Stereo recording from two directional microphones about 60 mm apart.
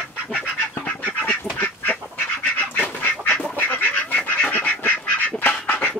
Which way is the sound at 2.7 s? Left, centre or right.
Left.